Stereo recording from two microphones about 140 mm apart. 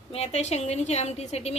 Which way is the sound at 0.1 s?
50° left (ahead or behind).